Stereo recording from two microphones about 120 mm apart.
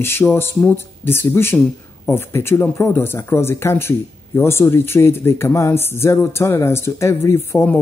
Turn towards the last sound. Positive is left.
turn(degrees=15)  # may be behind; listen again after turning